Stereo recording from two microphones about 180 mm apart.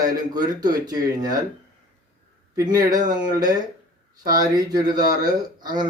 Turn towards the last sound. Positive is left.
turn(degrees=-20)  # may be behind; listen again after turning